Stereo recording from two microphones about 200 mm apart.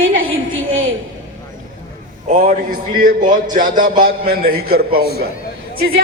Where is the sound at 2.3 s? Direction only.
40° right (ahead or behind).